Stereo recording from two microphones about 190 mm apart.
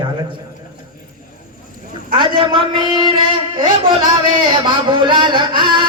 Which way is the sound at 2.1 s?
25° right (ahead or behind).